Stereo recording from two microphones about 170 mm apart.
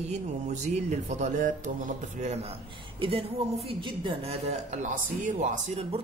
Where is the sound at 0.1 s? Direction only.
40° right (ahead or behind).